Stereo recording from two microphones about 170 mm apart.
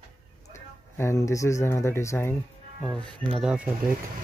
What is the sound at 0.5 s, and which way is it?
Speech, 15° left (ahead or behind).